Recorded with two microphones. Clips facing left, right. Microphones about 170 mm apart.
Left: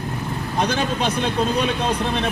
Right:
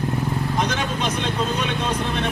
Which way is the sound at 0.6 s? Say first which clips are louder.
Left 6 dB; 35° left (ahead or behind).